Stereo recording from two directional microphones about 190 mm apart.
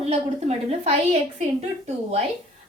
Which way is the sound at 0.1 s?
30° right (ahead or behind).